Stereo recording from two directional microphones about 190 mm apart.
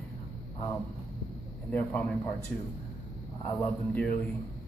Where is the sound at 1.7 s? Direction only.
10° left (ahead or behind).